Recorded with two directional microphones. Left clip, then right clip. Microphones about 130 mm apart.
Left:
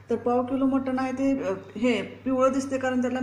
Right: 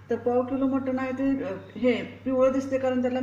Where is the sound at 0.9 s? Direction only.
40° left (ahead or behind).